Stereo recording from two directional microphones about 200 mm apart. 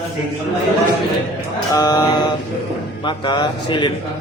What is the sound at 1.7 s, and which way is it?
Mantra, 20° left (ahead or behind).